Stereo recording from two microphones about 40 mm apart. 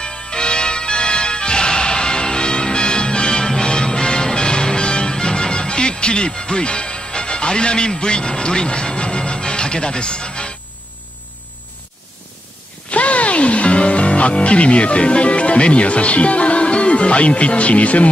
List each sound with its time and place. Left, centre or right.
0.0 s music: left
12.9 s music: left